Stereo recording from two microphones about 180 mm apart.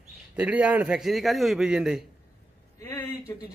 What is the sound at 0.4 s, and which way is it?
A man's voice, 10° right (ahead or behind).